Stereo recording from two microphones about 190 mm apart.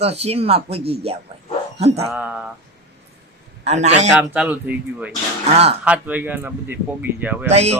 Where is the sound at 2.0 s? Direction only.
5° right (ahead or behind).